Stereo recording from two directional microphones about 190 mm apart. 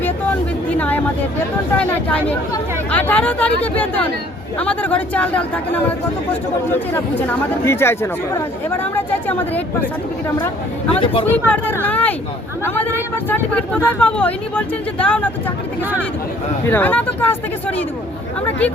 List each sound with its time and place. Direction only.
0.7 s a sound: 10° left (ahead or behind)
1.7 s speech: 5° left (ahead or behind)
11.0 s speech: 30° left (ahead or behind)
11.3 s speech: 10° left (ahead or behind)
16.6 s speech: 10° left (ahead or behind)